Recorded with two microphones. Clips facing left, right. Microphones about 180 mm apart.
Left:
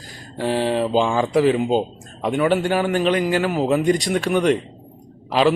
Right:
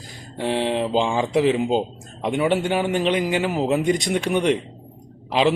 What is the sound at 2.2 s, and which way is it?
A man's voice, 15° right (ahead or behind).